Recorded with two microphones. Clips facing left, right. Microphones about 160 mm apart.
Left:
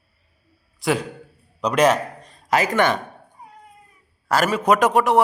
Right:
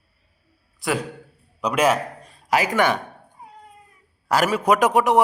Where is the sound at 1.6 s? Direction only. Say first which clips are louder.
Left 2 dB; 5° right (ahead or behind).